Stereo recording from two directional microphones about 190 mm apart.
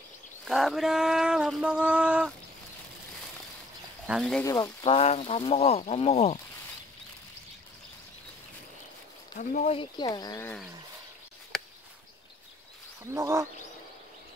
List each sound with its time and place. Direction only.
0.5 s a sound: centre (ahead or behind)
4.1 s a sound: centre (ahead or behind)
4.5 s speech: 15° left (ahead or behind)
4.8 s speech: 30° left (ahead or behind)
9.3 s speech: 45° left (ahead or behind); by 10.6 s 15° left (ahead or behind)
13.0 s speech: 15° right (ahead or behind)